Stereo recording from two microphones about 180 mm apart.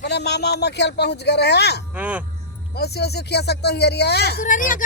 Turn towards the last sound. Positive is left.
turn(degrees=50)  # may be behind; listen again after turning